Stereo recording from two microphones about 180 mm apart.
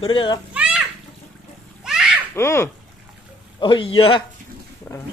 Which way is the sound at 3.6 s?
30° left (ahead or behind).